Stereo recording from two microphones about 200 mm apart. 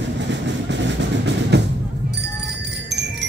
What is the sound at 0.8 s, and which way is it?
Music, 60° right (ahead or behind).